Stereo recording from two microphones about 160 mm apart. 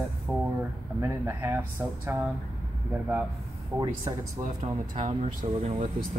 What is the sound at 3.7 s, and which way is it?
Speech, 25° right (ahead or behind).